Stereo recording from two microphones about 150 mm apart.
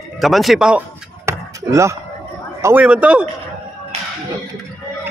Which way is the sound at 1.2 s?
20° right (ahead or behind).